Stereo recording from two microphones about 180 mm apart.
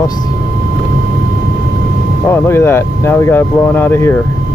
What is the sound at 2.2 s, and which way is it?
Speech, 10° left (ahead or behind).